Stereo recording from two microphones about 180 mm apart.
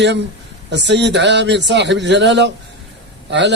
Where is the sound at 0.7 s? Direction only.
75° right (ahead or behind).